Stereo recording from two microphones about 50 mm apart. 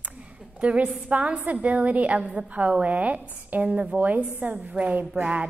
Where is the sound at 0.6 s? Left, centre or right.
Right.